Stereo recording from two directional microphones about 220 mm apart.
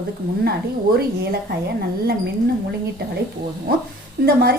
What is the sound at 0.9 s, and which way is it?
Speech, 45° right (ahead or behind).